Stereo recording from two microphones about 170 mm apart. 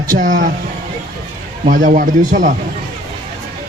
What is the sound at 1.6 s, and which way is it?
Speech, 50° right (ahead or behind).